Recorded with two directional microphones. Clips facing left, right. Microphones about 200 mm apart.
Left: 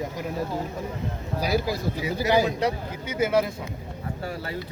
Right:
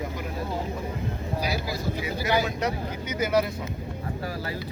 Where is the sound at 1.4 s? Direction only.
45° left (ahead or behind).